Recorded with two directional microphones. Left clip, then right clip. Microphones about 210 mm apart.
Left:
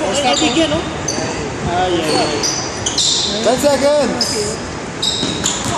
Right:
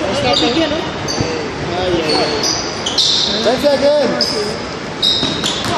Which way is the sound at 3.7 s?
25° left (ahead or behind).